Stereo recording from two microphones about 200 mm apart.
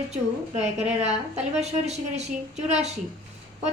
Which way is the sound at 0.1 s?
35° right (ahead or behind).